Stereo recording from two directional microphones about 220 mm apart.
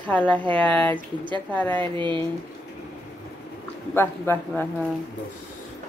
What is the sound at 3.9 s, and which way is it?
Speech, 10° left (ahead or behind).